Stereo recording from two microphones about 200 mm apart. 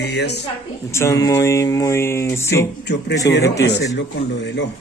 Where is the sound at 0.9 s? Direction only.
15° left (ahead or behind).